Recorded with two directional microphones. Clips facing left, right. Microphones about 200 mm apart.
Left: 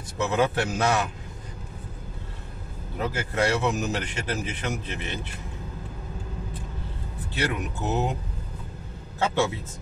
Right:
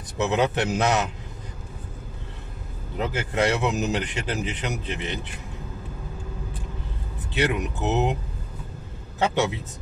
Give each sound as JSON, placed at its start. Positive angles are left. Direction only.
{"t": 0.2, "sound": "a man's voice", "side_deg": -20}
{"t": 3.0, "sound": "a man's voice", "side_deg": -20}
{"t": 7.3, "sound": "a man's voice", "side_deg": -20}
{"t": 9.2, "sound": "a man's voice", "side_deg": -20}